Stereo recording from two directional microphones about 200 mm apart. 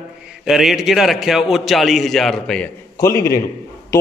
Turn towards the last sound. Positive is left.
turn(degrees=15)  # may be behind; listen again after turning